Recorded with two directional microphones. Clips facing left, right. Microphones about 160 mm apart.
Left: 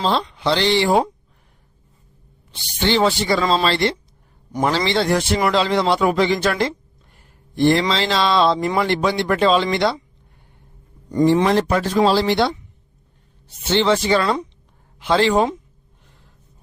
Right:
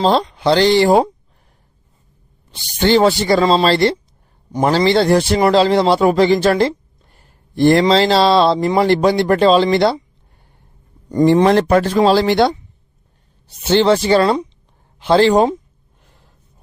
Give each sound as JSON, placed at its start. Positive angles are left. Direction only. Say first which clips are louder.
{"t": 0.0, "sound": "a man's voice", "louder": "right 6 dB", "side_deg": -40}
{"t": 2.8, "sound": "a man's voice", "louder": "right 5 dB", "side_deg": -40}
{"t": 11.1, "sound": "speech", "louder": "right 4 dB", "side_deg": -45}
{"t": 13.7, "sound": "a man's voice", "louder": "right 4 dB", "side_deg": -40}